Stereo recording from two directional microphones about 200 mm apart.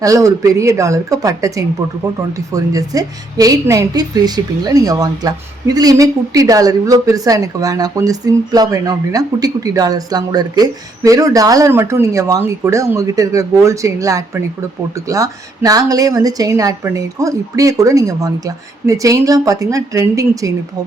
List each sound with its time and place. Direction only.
0.0 s a woman's voice: 15° right (ahead or behind)